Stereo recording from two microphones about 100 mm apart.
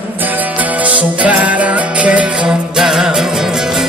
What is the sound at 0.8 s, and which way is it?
Music, 15° right (ahead or behind).